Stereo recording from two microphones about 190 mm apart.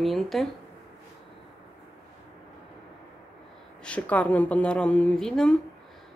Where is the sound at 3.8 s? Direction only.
5° left (ahead or behind).